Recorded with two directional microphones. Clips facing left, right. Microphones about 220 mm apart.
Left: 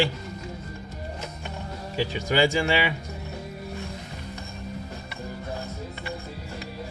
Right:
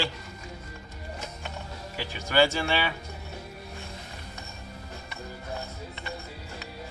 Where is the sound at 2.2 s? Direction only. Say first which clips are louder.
Left 1 dB; 15° left (ahead or behind).